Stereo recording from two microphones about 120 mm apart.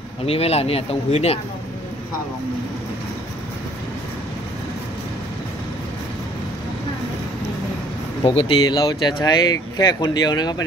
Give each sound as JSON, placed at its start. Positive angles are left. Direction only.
{"t": 0.2, "sound": "speech", "side_deg": 55}
{"t": 8.2, "sound": "speech", "side_deg": 50}